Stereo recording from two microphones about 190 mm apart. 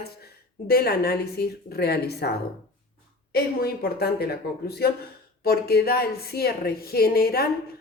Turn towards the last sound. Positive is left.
turn(degrees=55)  # may be behind; listen again after turning